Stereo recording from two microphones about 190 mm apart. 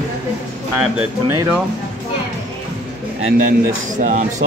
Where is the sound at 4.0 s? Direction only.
40° right (ahead or behind).